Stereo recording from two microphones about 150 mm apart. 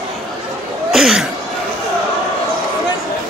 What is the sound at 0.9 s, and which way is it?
Cough, 5° right (ahead or behind).